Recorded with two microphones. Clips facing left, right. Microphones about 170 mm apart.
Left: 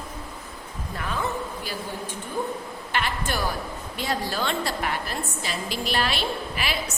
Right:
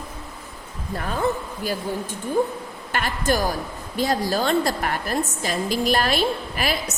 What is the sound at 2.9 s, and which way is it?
A woman's voice, 40° right (ahead or behind).